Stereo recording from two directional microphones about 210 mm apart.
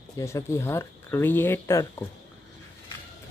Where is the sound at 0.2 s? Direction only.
10° left (ahead or behind).